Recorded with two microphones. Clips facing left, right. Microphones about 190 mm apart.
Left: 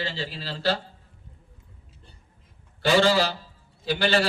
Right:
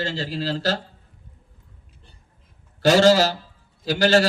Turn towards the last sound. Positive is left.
turn(degrees=-40)  # may be behind; listen again after turning